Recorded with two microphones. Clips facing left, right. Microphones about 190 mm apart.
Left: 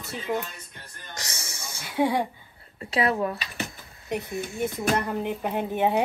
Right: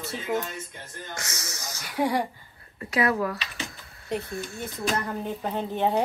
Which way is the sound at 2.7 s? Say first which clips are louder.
Even; 25° left (ahead or behind).